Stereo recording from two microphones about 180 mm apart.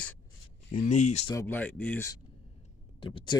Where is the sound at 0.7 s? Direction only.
40° left (ahead or behind).